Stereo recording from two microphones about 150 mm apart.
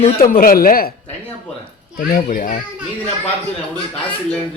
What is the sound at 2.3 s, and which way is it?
Speech, 65° left (ahead or behind).